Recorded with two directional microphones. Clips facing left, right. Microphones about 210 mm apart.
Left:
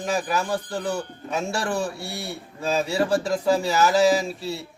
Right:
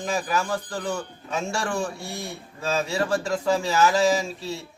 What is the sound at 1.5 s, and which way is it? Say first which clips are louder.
Speech: left 1 dB; 5° left (ahead or behind).